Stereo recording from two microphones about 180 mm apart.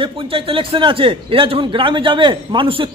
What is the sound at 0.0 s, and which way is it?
Speech, 30° right (ahead or behind).